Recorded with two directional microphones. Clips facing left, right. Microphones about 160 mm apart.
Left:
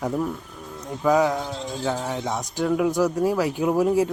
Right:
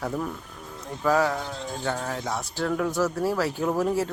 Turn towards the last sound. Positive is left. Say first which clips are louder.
# left 4 dB
turn(degrees=15)  # may be behind; listen again after turning